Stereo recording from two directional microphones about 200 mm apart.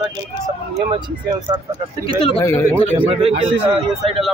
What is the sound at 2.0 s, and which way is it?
Speech, 25° left (ahead or behind).